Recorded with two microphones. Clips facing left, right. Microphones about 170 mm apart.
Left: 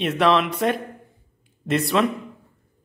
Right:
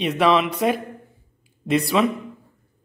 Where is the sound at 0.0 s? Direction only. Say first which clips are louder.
Right 1 dB; centre (ahead or behind).